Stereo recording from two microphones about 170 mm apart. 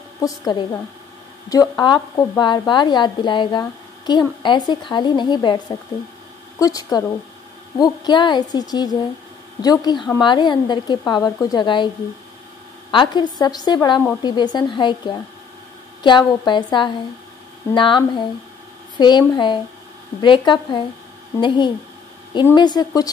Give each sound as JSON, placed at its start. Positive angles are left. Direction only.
{"t": 0.2, "sound": "speech", "side_deg": 25}
{"t": 12.9, "sound": "speech", "side_deg": 25}